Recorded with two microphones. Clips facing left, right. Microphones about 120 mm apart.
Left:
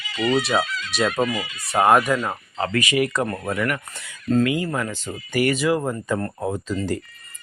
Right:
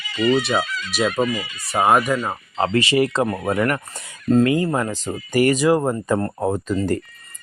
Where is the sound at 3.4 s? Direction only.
50° right (ahead or behind).